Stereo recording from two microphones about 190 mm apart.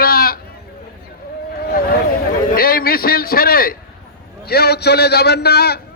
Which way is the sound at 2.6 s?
50° left (ahead or behind).